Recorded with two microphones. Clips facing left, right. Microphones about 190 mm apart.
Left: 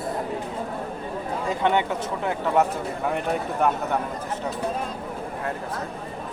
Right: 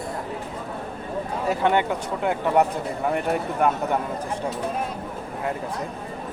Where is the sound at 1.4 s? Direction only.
10° right (ahead or behind).